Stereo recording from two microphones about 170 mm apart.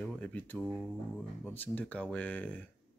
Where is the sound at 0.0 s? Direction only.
5° left (ahead or behind).